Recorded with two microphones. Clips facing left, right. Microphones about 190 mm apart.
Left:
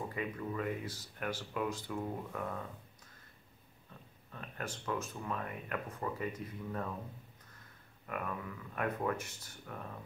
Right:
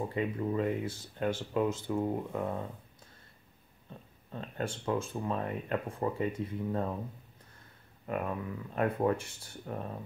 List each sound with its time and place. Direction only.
0.1 s speech: 30° right (ahead or behind)
3.9 s a sound: 30° right (ahead or behind)
4.3 s speech: 30° right (ahead or behind)
8.1 s speech: 30° right (ahead or behind)